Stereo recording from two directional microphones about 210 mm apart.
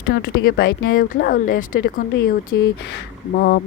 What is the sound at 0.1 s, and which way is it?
Speech, 50° left (ahead or behind).